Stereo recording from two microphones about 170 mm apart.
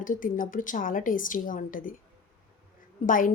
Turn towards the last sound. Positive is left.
turn(degrees=50)  # may be behind; listen again after turning